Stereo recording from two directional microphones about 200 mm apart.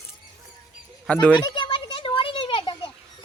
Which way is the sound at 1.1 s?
5° left (ahead or behind).